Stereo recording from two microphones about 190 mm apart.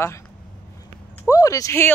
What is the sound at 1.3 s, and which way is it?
Speech, 20° left (ahead or behind).